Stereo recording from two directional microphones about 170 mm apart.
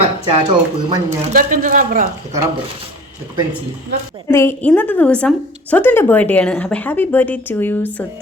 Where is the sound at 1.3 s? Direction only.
50° right (ahead or behind).